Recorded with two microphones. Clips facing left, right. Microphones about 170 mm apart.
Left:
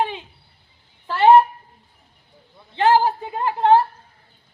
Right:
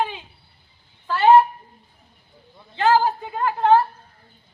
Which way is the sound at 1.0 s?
30° left (ahead or behind).